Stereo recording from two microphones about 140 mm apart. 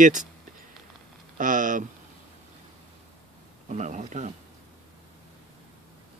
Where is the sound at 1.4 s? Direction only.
65° right (ahead or behind).